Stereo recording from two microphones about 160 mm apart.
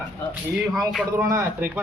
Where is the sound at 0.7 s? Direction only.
Centre (ahead or behind).